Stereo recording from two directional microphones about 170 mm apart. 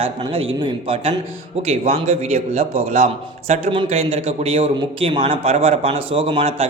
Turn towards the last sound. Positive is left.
turn(degrees=-35)  # may be behind; listen again after turning